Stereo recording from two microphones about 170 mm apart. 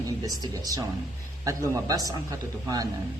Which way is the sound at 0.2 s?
20° right (ahead or behind).